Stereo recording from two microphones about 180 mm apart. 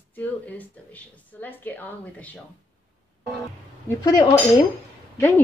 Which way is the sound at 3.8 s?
20° left (ahead or behind).